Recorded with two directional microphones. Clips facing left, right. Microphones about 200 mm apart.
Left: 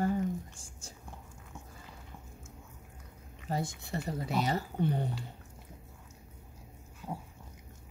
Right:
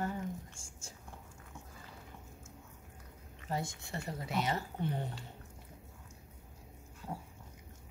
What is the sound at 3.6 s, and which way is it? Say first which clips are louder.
Speech: left 4 dB; 35° left (ahead or behind).